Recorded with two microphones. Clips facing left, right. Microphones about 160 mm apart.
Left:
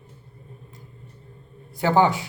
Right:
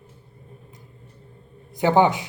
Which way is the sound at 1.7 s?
20° right (ahead or behind).